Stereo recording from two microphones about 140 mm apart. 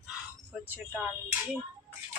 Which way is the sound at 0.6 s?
15° right (ahead or behind).